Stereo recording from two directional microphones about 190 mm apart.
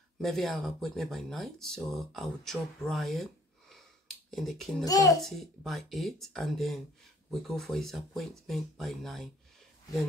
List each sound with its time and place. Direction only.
0.2 s speech: centre (ahead or behind)
3.7 s a sound: centre (ahead or behind)
4.8 s a child's voice: 20° left (ahead or behind)
5.2 s speech: centre (ahead or behind)